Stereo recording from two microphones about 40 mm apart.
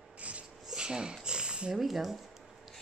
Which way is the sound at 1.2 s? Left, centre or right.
Right.